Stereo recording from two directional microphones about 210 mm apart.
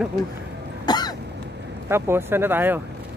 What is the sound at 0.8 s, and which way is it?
Cough, 20° left (ahead or behind).